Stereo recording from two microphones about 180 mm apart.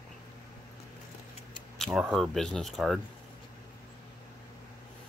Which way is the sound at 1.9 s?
Centre (ahead or behind).